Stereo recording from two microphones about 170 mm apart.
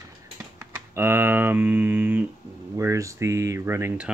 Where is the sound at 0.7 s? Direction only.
15° right (ahead or behind).